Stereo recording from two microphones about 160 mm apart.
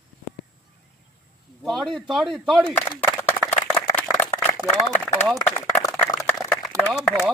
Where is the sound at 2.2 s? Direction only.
30° right (ahead or behind).